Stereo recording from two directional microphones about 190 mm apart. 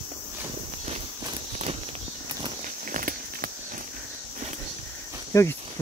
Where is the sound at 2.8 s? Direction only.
45° right (ahead or behind).